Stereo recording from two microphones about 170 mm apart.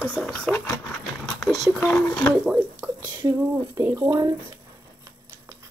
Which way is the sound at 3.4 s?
15° right (ahead or behind).